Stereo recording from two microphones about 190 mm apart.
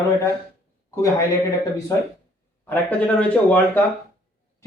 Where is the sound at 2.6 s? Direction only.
10° left (ahead or behind).